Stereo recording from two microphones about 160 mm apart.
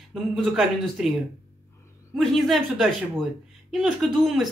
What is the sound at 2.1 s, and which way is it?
Speech, centre (ahead or behind).